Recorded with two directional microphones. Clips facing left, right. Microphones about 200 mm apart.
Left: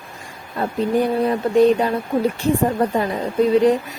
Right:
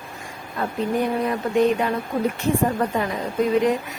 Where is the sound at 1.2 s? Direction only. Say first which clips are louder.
Left 6 dB; 35° left (ahead or behind).